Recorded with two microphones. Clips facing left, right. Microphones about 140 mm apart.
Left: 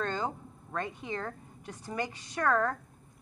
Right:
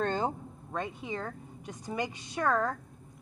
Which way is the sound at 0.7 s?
10° right (ahead or behind).